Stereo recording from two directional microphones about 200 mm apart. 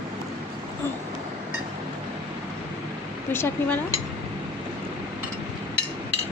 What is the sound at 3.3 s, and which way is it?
Speech, 10° left (ahead or behind).